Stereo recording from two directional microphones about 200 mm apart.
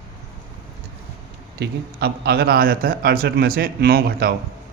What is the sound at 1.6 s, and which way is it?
A man's voice, 55° right (ahead or behind).